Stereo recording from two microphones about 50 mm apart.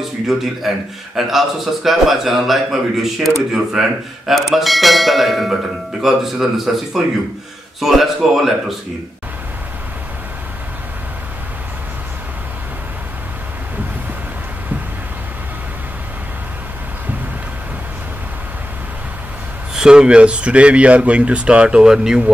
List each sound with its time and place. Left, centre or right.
0.0 s a man's voice: centre
19.7 s speech: centre